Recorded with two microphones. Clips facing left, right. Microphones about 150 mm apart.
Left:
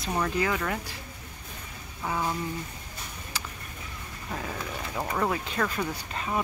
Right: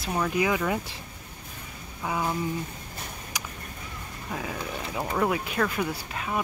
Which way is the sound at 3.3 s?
15° right (ahead or behind).